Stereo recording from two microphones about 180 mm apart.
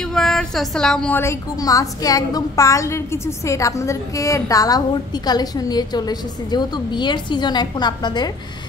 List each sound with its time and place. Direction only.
0.0 s a woman's voice: 5° left (ahead or behind); by 8.3 s 25° left (ahead or behind)